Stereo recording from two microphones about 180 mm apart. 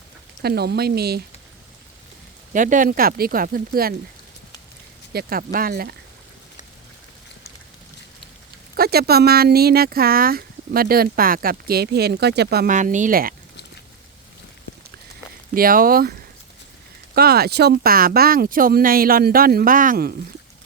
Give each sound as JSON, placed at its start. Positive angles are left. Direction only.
{"t": 0.4, "sound": "speech", "side_deg": -60}
{"t": 2.5, "sound": "speech", "side_deg": -45}
{"t": 5.1, "sound": "speech", "side_deg": -55}
{"t": 8.7, "sound": "speech", "side_deg": -60}
{"t": 12.7, "sound": "speech", "side_deg": -45}
{"t": 15.5, "sound": "speech", "side_deg": -55}
{"t": 17.2, "sound": "speech", "side_deg": -60}